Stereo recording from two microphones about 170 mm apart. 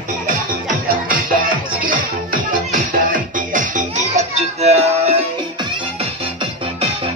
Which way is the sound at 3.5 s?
50° right (ahead or behind).